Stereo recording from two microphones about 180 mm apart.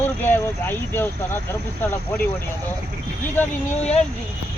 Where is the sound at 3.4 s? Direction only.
10° left (ahead or behind).